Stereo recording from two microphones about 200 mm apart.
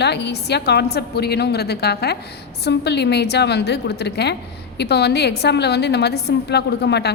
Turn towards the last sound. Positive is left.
turn(degrees=55)  # may be behind; listen again after turning